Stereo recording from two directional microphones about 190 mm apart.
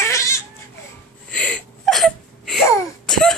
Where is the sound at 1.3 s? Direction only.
5° left (ahead or behind).